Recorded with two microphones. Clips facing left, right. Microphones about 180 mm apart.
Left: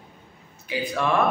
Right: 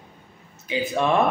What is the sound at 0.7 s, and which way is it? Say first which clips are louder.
Speech: right 3 dB; 25° right (ahead or behind).